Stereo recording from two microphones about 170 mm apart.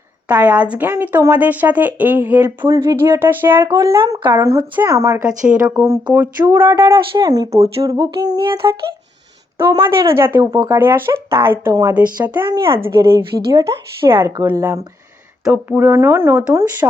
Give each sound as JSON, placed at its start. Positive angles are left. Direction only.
{"t": 0.3, "sound": "speech", "side_deg": -10}
{"t": 3.6, "sound": "humming", "side_deg": -20}
{"t": 4.4, "sound": "speech", "side_deg": -15}
{"t": 6.7, "sound": "humming", "side_deg": -30}
{"t": 9.6, "sound": "speech", "side_deg": -15}